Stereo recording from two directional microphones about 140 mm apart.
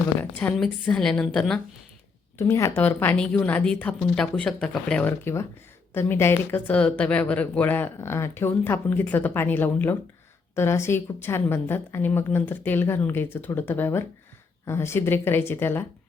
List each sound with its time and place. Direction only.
0.2 s a woman's voice: 15° left (ahead or behind)
2.4 s a woman's voice: 20° left (ahead or behind)